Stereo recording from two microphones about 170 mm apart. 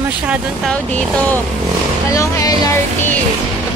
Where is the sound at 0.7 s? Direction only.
10° left (ahead or behind).